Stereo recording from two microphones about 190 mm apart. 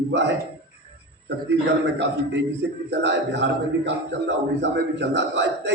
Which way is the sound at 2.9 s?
65° right (ahead or behind).